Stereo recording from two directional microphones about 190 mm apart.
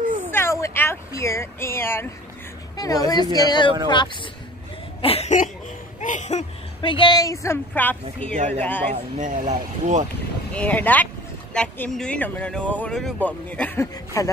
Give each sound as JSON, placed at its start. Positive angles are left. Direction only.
{"t": 0.3, "sound": "a woman's voice", "side_deg": 15}
{"t": 5.0, "sound": "cough", "side_deg": 35}
{"t": 5.9, "sound": "a woman's voice", "side_deg": 40}
{"t": 8.9, "sound": "speech", "side_deg": -45}
{"t": 10.5, "sound": "speech", "side_deg": 5}